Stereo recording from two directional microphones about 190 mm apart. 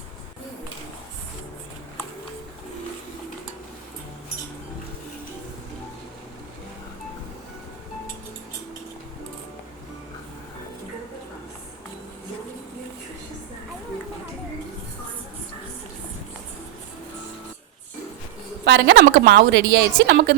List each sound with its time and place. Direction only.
18.6 s a woman's voice: 65° right (ahead or behind)